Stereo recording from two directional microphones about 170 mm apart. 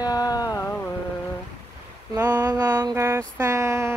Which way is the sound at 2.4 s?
20° right (ahead or behind).